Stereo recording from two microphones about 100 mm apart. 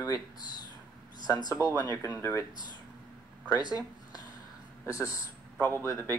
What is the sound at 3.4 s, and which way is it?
Speech, 40° left (ahead or behind).